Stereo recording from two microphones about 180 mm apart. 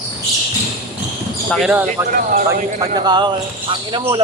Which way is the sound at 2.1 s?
45° right (ahead or behind).